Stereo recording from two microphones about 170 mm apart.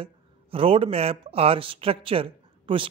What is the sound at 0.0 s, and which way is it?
Speech, 35° right (ahead or behind).